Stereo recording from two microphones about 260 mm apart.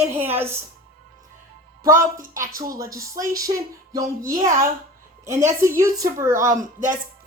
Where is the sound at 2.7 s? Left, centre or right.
Centre.